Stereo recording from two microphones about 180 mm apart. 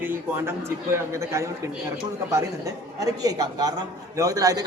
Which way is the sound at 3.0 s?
20° right (ahead or behind).